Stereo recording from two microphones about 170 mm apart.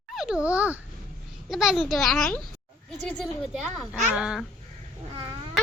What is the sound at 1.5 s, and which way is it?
A child's voice, 5° right (ahead or behind).